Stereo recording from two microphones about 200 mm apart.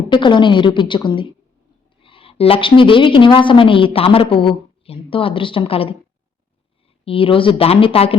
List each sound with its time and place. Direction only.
0.1 s a woman's voice: 25° left (ahead or behind)
7.0 s a woman's voice: 25° left (ahead or behind)